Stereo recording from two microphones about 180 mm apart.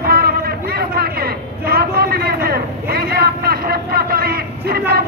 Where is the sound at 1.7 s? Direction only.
60° right (ahead or behind).